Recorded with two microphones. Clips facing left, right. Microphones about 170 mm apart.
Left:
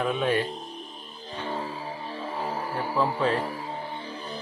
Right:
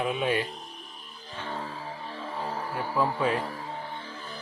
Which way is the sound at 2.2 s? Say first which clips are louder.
Left 2 dB; 5° left (ahead or behind).